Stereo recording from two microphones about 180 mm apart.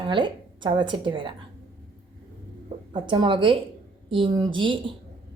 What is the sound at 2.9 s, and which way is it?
A woman's voice, 25° right (ahead or behind).